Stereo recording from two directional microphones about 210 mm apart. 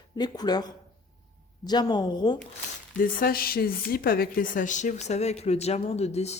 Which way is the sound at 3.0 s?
45° left (ahead or behind).